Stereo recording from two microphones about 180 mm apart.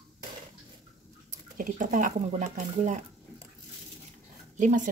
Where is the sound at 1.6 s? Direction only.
45° right (ahead or behind).